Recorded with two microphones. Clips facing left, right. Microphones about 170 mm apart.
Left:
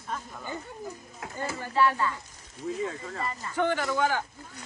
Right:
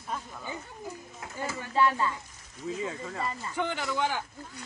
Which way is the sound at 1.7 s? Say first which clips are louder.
Left 1 dB; 15° right (ahead or behind).